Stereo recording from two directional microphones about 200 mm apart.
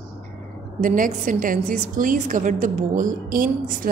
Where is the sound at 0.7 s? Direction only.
40° right (ahead or behind).